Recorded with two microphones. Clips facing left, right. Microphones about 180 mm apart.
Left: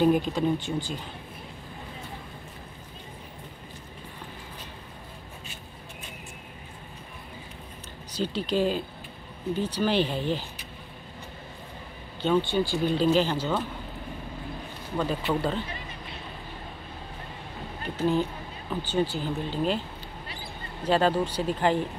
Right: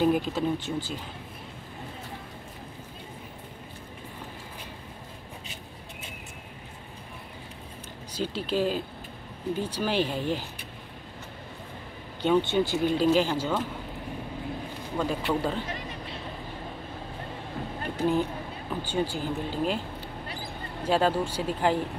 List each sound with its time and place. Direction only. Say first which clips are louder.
0.0 s speech: left 2 dB; 5° right (ahead or behind)
8.1 s speech: left 2 dB; 10° right (ahead or behind)
12.2 s speech: right 1 dB; 15° right (ahead or behind)
13.0 s speech: left 1 dB; 10° right (ahead or behind)
15.0 s speech: even; 10° right (ahead or behind)
17.9 s speech: left 1 dB; 10° right (ahead or behind)
20.8 s speech: left 1 dB; 10° right (ahead or behind)